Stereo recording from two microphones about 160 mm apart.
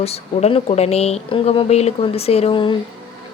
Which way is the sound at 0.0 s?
40° left (ahead or behind).